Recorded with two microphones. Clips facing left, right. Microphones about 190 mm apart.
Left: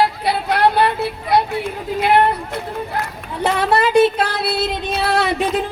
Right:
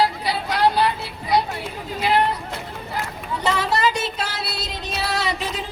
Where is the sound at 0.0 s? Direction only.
55° left (ahead or behind).